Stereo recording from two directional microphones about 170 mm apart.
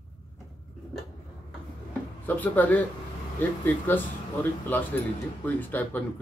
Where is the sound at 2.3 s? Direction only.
10° left (ahead or behind).